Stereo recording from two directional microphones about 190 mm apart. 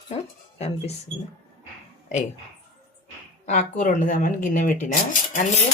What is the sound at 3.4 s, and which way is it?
Speech, 40° left (ahead or behind).